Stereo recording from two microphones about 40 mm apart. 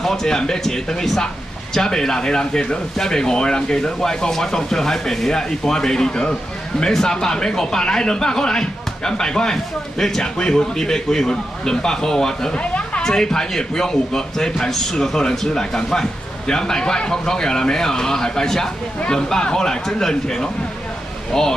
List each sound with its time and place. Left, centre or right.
0.0 s speech: centre
12.5 s a sound: left
13.0 s speech: centre